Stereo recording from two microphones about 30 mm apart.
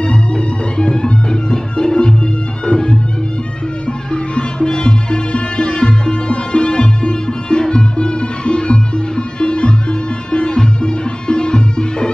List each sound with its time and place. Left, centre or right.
0.0 s music: left
4.1 s music: left